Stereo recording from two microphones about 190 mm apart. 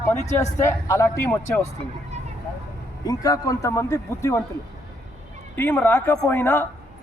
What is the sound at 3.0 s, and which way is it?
A man's voice, 20° left (ahead or behind).